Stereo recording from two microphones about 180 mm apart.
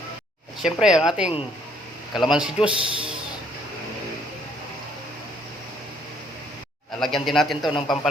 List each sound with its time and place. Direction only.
0.6 s a man's voice: 5° right (ahead or behind)
7.0 s a man's voice: centre (ahead or behind)
7.7 s a man's voice: 30° left (ahead or behind)